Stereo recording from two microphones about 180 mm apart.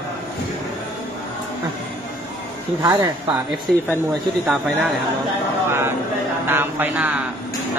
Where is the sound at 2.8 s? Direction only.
25° right (ahead or behind).